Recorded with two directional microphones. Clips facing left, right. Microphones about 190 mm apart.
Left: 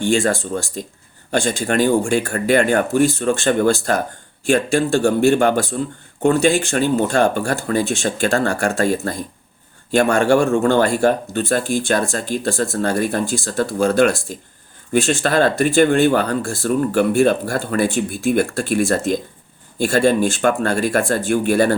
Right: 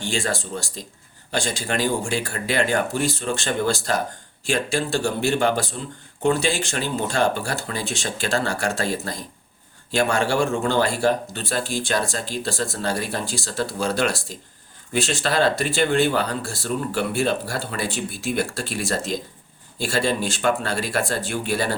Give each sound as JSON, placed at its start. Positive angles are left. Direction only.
{"t": 0.0, "sound": "speech", "side_deg": 50}